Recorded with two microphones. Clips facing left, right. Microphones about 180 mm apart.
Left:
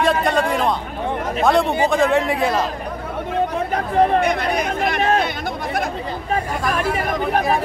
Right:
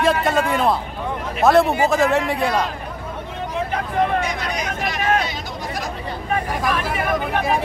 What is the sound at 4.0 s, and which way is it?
Speech, 35° left (ahead or behind).